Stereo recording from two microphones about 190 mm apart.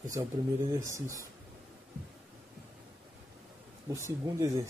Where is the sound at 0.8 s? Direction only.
15° right (ahead or behind).